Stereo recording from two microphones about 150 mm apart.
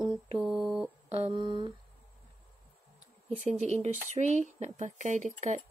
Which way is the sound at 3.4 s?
50° right (ahead or behind).